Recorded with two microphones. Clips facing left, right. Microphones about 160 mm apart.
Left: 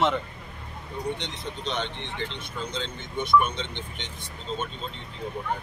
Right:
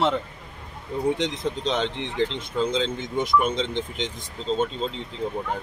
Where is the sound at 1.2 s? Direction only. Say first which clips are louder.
Right 9 dB; 90° right.